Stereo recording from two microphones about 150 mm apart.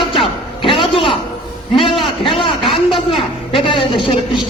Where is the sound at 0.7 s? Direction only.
35° left (ahead or behind).